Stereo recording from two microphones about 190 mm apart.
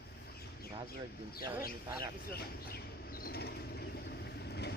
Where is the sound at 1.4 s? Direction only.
10° right (ahead or behind).